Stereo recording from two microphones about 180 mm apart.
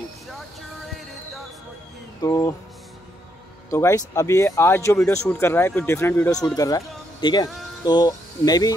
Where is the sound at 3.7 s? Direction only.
15° left (ahead or behind).